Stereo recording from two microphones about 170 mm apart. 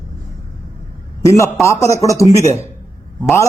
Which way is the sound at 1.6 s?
15° left (ahead or behind).